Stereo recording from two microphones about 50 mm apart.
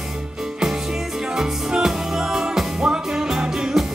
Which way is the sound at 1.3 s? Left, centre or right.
Centre.